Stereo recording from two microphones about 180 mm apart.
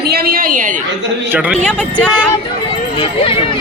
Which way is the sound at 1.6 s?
5° left (ahead or behind).